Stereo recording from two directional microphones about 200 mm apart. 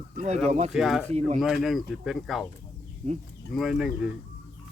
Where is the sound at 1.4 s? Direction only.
Centre (ahead or behind).